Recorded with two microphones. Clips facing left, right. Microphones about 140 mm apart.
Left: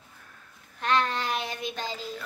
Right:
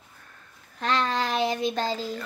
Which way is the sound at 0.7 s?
90° right.